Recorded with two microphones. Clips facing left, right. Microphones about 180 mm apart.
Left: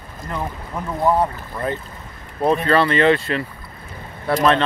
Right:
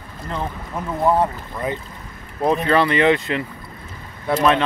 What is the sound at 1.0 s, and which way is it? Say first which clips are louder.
Speech: even; centre (ahead or behind).